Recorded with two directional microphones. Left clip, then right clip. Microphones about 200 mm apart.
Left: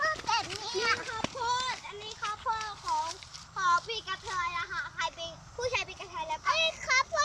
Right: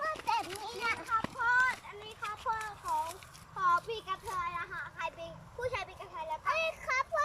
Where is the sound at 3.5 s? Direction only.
10° right (ahead or behind).